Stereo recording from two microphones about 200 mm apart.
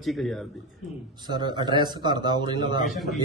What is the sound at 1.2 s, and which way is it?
A man's voice, 20° right (ahead or behind).